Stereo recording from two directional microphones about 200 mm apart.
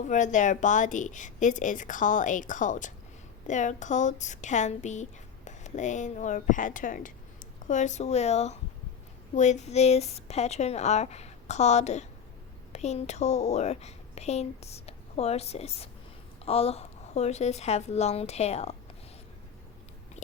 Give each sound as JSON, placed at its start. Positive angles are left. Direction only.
{"t": 0.0, "sound": "a woman's voice", "side_deg": 35}
{"t": 20.2, "sound": "biting", "side_deg": 35}